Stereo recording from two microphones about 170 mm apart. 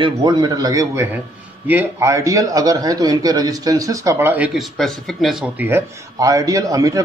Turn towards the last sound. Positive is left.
turn(degrees=-20)  # may be behind; listen again after turning